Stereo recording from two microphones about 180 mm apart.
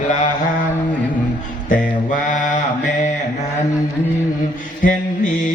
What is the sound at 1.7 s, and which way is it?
Mantra, 45° left (ahead or behind).